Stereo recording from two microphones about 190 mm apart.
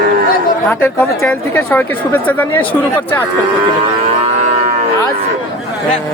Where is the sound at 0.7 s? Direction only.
10° left (ahead or behind).